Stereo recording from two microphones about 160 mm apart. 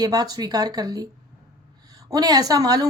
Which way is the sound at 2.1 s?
25° right (ahead or behind).